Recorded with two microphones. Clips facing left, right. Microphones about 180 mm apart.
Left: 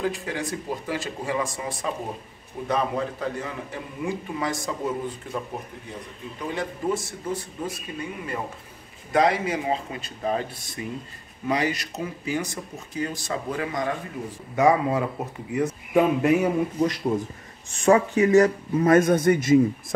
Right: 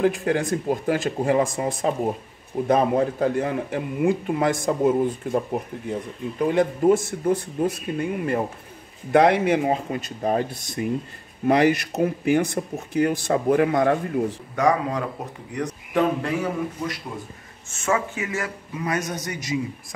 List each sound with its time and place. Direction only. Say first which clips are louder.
0.0 s speech: right 7 dB; 55° right (ahead or behind)
6.4 s speech: right 9 dB; 50° right (ahead or behind)
14.5 s speech: left 3 dB; 10° left (ahead or behind)
16.3 s a man's voice: left 4 dB; 20° left (ahead or behind)
17.8 s a man's voice: left 7 dB; 35° left (ahead or behind); by 19.6 s 50° left (ahead or behind)